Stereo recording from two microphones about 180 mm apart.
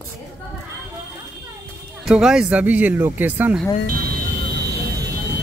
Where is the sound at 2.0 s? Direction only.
5° right (ahead or behind).